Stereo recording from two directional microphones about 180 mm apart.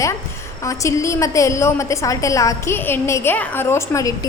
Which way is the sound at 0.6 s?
15° left (ahead or behind).